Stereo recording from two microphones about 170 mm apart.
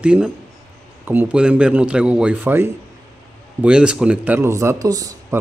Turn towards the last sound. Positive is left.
turn(degrees=-20)  # may be behind; listen again after turning